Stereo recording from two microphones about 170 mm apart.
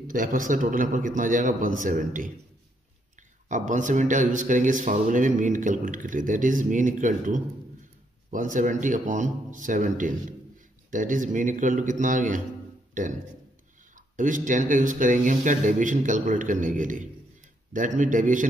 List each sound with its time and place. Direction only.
0.0 s speech: 55° right (ahead or behind)
3.4 s speech: 45° right (ahead or behind)
14.1 s speech: 50° right (ahead or behind)